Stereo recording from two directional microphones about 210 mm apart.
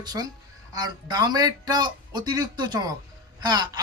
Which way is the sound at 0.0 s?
20° right (ahead or behind).